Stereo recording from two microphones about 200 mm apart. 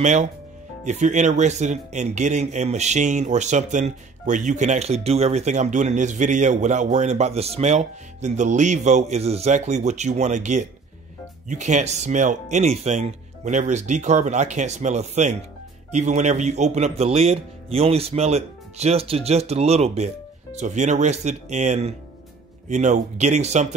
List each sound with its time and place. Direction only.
0.0 s speech: 35° right (ahead or behind)